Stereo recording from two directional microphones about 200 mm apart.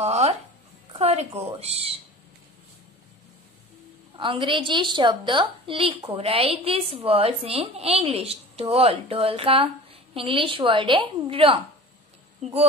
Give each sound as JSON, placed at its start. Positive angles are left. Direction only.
{"t": 0.0, "sound": "music", "side_deg": -30}
{"t": 0.9, "sound": "a woman's voice", "side_deg": -30}
{"t": 4.2, "sound": "a woman's voice", "side_deg": -25}